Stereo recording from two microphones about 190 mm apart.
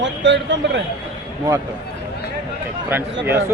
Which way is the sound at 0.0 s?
70° right (ahead or behind).